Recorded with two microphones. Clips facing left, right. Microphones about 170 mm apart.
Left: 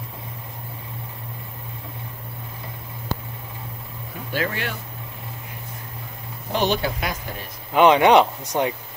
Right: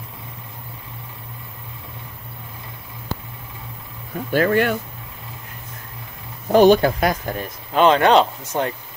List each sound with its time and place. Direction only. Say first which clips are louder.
4.3 s speech: right 9 dB; 50° right (ahead or behind)
6.5 s speech: right 10 dB; 45° right (ahead or behind)
7.7 s speech: even; 15° left (ahead or behind)